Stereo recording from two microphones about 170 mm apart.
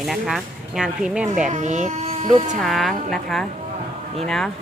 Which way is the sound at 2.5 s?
Centre (ahead or behind).